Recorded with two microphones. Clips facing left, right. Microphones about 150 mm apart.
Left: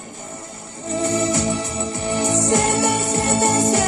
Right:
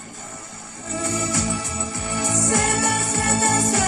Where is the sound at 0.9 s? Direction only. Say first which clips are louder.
Left 5 dB; 25° left (ahead or behind).